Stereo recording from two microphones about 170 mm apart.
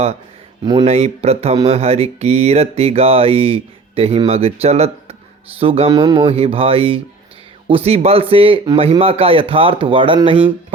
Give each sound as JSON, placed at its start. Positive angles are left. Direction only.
{"t": 0.6, "sound": "speech", "side_deg": -25}
{"t": 0.9, "sound": "speech", "side_deg": -40}